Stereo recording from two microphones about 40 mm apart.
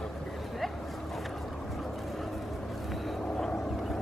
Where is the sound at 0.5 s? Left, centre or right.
Centre.